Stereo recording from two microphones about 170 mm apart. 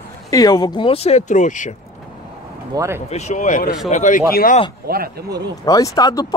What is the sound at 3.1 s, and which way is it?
Speech, 45° left (ahead or behind).